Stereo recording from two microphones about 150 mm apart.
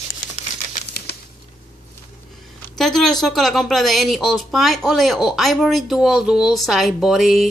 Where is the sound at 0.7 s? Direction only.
60° left (ahead or behind).